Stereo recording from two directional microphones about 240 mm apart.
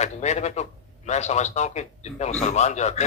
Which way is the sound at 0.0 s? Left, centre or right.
Left.